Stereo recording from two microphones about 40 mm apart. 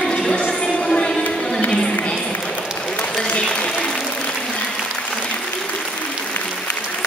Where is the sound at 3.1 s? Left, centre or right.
Centre.